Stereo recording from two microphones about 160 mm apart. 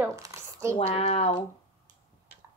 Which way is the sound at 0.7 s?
35° left (ahead or behind).